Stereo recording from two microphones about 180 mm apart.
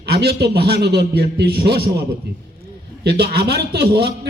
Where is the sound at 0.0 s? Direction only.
65° right (ahead or behind).